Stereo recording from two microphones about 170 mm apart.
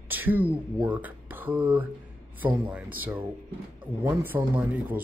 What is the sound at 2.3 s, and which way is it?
Speech, 10° right (ahead or behind).